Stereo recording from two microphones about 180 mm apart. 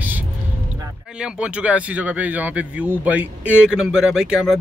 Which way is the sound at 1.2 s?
5° right (ahead or behind).